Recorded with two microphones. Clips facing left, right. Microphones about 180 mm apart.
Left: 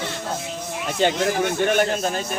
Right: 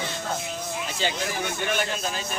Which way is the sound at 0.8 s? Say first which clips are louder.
Left 11 dB; 55° left (ahead or behind).